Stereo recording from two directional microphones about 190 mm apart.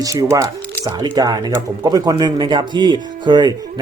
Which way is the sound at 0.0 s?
15° right (ahead or behind).